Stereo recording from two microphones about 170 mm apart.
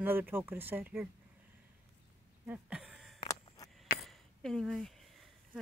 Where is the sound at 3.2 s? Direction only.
20° left (ahead or behind).